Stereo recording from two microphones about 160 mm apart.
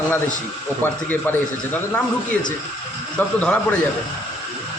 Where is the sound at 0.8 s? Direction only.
10° left (ahead or behind).